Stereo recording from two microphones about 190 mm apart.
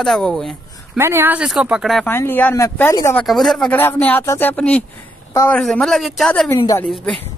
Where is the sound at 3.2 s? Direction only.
Centre (ahead or behind).